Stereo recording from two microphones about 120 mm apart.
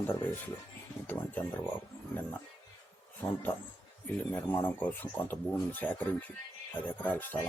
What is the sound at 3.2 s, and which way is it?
A man's voice, 20° left (ahead or behind).